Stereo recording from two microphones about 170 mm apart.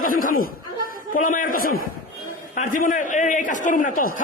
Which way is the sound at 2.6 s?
50° left (ahead or behind).